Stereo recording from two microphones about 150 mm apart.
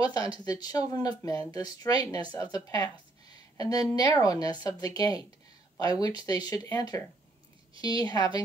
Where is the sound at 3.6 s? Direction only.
25° left (ahead or behind).